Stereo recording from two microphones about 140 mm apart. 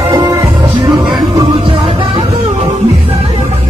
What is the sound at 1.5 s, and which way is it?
Music, 40° right (ahead or behind).